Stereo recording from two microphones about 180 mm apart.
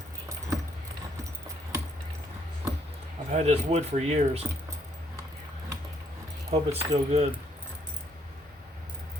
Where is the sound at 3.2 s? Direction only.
35° right (ahead or behind).